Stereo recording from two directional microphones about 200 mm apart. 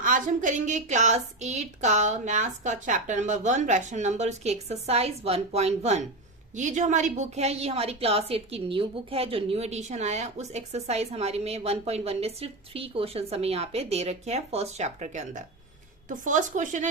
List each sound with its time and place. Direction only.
0.0 s a woman's voice: 40° right (ahead or behind)